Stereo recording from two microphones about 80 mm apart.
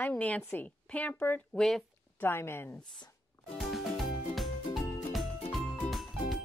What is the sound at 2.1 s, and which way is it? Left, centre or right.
Speech, left.